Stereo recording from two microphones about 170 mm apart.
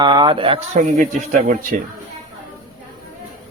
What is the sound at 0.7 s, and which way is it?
Speech, 50° right (ahead or behind).